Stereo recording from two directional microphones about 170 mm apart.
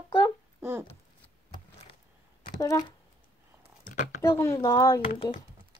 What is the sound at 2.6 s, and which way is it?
Speech, 20° left (ahead or behind).